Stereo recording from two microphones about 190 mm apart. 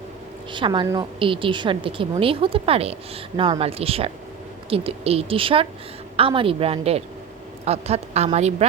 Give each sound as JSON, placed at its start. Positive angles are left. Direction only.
{"t": 0.5, "sound": "a woman's voice", "side_deg": -25}